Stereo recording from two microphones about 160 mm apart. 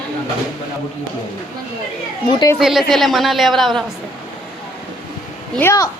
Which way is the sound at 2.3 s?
25° left (ahead or behind).